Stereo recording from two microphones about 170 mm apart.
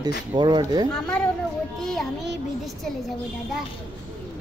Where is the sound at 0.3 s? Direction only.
25° right (ahead or behind).